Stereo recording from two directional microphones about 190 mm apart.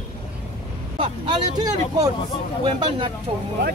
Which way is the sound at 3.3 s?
30° right (ahead or behind).